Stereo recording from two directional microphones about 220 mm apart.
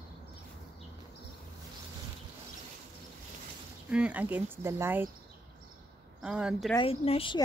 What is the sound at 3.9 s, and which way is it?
Speech, 5° right (ahead or behind).